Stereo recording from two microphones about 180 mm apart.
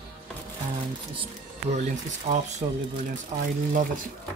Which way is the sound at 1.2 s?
40° right (ahead or behind).